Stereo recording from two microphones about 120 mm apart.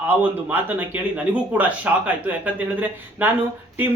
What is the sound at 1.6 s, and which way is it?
Speech, 10° right (ahead or behind).